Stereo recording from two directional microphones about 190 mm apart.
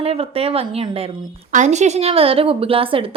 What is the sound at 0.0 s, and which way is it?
A woman's voice, 30° right (ahead or behind).